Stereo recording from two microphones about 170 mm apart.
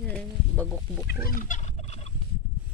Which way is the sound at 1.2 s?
55° left (ahead or behind).